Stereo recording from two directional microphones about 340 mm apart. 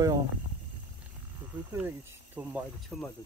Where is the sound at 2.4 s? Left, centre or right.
Centre.